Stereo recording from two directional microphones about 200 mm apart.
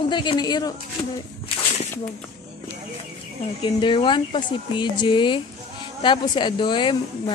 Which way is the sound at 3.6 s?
25° left (ahead or behind).